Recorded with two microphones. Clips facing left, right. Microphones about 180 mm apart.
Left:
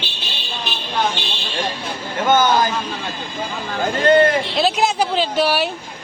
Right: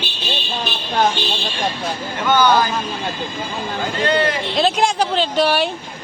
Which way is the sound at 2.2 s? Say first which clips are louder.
Even; 45° left (ahead or behind).